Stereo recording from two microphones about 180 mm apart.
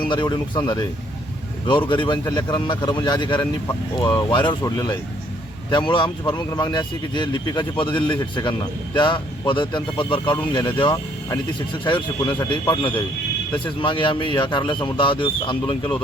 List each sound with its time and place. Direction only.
0.0 s speech: 25° left (ahead or behind)